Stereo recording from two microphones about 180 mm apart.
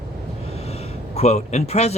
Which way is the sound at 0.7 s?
35° left (ahead or behind).